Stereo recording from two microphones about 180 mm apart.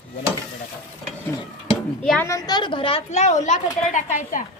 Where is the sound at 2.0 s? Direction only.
10° left (ahead or behind); by 4.4 s 45° left (ahead or behind).